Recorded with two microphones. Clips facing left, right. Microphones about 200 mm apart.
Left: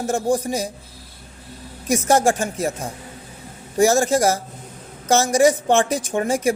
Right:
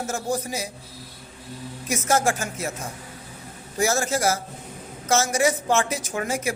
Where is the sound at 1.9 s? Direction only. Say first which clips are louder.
Left 5 dB; 35° left (ahead or behind).